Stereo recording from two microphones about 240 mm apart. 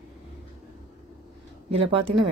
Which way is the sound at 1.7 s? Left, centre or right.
Right.